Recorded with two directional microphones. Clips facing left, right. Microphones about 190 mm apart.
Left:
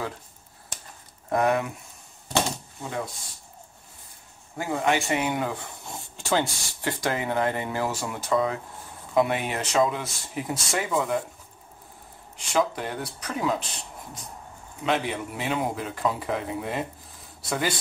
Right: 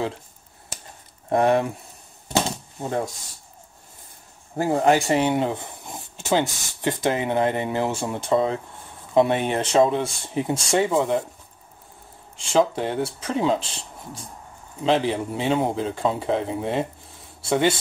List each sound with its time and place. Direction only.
1.3 s speech: 30° right (ahead or behind)
4.6 s speech: 35° right (ahead or behind)
12.4 s speech: 30° right (ahead or behind)